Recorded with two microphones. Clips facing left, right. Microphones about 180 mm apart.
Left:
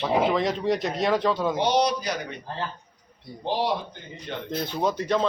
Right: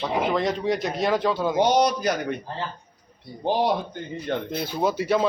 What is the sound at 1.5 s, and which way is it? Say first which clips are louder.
Speech: right 3 dB; 50° right (ahead or behind).